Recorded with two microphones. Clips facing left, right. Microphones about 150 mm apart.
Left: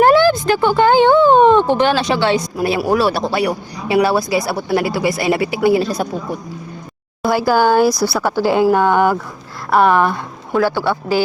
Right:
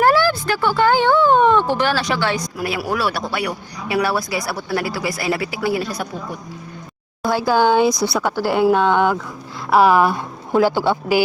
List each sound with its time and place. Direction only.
0.0 s speech: 20° left (ahead or behind)
7.2 s speech: 5° left (ahead or behind)
9.6 s a woman's voice: 5° right (ahead or behind)